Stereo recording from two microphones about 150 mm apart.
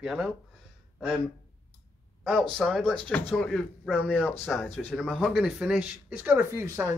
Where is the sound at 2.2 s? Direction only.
Centre (ahead or behind).